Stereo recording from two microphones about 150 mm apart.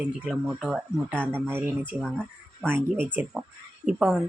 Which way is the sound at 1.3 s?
15° right (ahead or behind).